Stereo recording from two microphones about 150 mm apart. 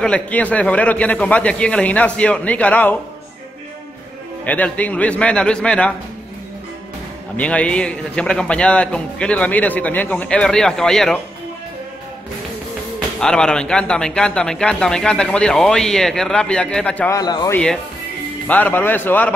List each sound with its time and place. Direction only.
0.0 s a man's voice: 10° left (ahead or behind)
4.5 s a man's voice: 10° left (ahead or behind)
7.3 s a man's voice: 10° left (ahead or behind)
13.2 s speech: 5° left (ahead or behind)
17.1 s a man's voice: 25° left (ahead or behind)
17.5 s a man's voice: 5° left (ahead or behind)